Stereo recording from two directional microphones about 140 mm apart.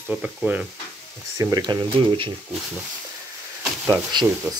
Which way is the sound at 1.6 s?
30° right (ahead or behind).